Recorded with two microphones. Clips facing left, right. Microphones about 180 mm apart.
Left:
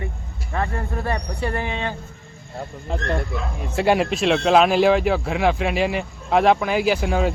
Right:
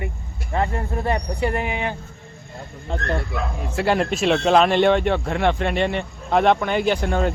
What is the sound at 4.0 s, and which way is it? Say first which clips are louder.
Speech: even; centre (ahead or behind).